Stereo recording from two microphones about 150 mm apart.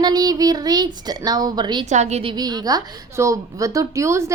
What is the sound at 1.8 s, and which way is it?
Speech, 50° right (ahead or behind).